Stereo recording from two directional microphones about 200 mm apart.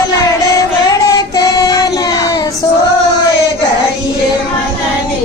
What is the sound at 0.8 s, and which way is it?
Child singing, 20° left (ahead or behind).